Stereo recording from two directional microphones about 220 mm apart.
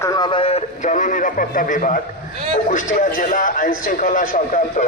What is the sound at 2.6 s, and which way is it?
A man's voice, 35° left (ahead or behind).